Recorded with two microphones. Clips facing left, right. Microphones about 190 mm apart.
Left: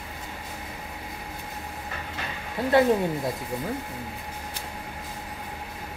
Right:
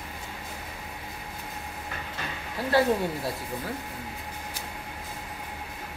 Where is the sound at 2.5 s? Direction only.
20° left (ahead or behind).